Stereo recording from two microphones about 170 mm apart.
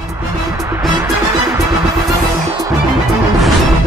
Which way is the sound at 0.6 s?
20° right (ahead or behind).